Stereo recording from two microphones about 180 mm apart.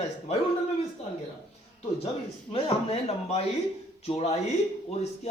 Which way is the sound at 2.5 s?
35° left (ahead or behind).